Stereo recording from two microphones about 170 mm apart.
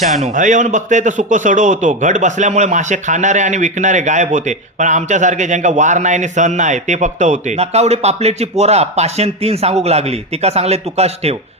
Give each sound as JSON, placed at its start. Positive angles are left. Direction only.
{"t": 0.0, "sound": "speech", "side_deg": -40}